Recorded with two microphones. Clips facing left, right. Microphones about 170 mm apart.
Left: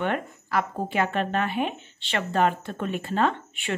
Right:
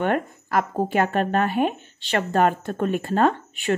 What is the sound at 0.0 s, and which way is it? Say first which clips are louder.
Speech: right 4 dB; 45° right (ahead or behind).